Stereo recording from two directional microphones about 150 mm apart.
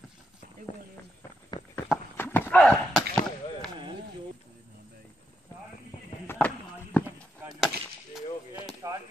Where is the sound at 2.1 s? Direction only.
15° left (ahead or behind).